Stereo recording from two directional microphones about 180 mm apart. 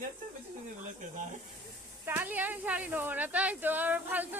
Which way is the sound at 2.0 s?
10° right (ahead or behind).